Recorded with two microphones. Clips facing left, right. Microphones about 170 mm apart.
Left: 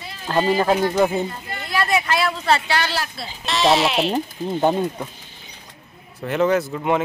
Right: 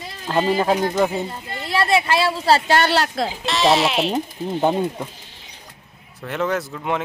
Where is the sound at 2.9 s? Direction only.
80° right.